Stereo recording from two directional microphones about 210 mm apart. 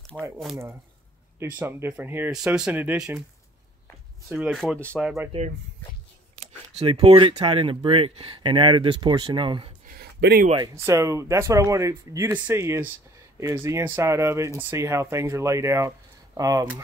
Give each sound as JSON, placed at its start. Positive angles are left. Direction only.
{"t": 0.1, "sound": "speech", "side_deg": -5}
{"t": 1.4, "sound": "speech", "side_deg": -10}
{"t": 4.3, "sound": "speech", "side_deg": 0}
{"t": 4.8, "sound": "speech", "side_deg": -10}
{"t": 6.8, "sound": "speech", "side_deg": -25}
{"t": 9.8, "sound": "a sound", "side_deg": -50}
{"t": 10.9, "sound": "speech", "side_deg": -15}